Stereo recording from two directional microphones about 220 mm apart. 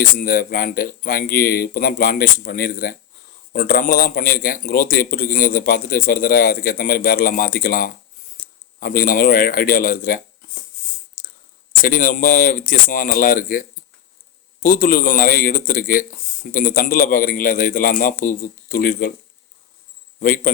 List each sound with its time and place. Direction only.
0.0 s speech: 40° left (ahead or behind)
11.8 s speech: 40° left (ahead or behind)
20.1 s a man's voice: 40° left (ahead or behind)